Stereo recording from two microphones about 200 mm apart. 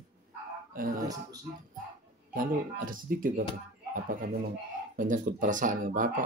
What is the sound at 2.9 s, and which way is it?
Speech, 45° right (ahead or behind).